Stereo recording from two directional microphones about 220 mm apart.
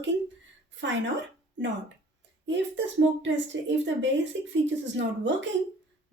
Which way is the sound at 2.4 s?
55° right (ahead or behind).